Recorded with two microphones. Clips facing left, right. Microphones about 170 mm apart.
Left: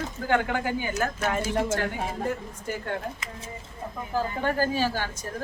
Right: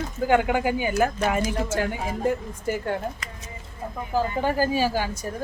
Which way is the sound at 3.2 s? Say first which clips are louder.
Even; 25° left (ahead or behind).